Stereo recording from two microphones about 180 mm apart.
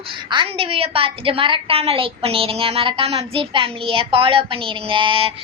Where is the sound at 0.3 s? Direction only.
30° right (ahead or behind).